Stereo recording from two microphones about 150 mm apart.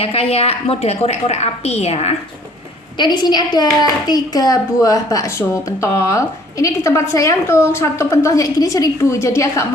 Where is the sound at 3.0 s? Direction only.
30° left (ahead or behind).